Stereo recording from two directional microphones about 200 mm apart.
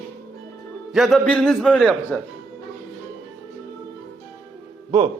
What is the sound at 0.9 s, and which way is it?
A man's voice, centre (ahead or behind).